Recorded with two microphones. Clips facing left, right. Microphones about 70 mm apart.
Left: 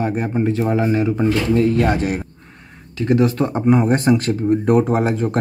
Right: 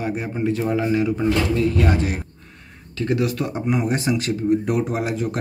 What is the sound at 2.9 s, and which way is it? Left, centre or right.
Speech, left.